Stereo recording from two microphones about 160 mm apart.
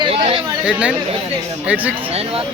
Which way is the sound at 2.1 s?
40° right (ahead or behind).